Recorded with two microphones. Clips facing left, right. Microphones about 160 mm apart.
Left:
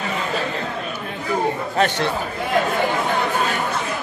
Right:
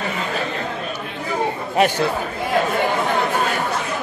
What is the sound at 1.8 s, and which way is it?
Speech, 10° right (ahead or behind).